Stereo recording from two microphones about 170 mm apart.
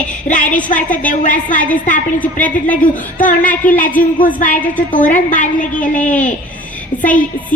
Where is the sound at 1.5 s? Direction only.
10° left (ahead or behind).